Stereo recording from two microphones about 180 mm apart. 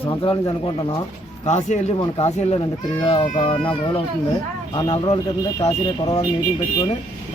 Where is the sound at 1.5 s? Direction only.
40° left (ahead or behind).